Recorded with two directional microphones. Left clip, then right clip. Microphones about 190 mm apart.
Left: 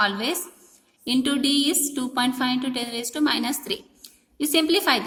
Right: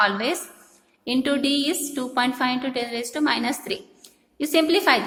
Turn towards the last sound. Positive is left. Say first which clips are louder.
# right 2 dB
turn(degrees=25)  # may be behind; listen again after turning